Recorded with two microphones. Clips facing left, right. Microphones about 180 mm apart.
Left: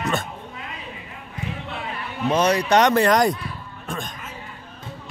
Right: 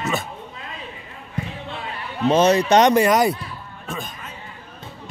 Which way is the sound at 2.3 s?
25° right (ahead or behind).